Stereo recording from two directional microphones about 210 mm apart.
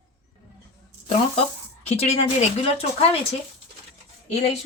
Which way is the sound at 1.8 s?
30° left (ahead or behind).